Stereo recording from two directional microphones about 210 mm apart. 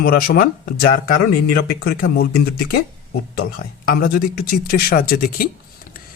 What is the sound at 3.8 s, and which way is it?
Speech, 45° left (ahead or behind).